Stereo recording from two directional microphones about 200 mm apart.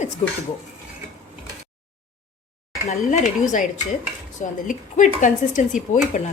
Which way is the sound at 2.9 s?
40° left (ahead or behind).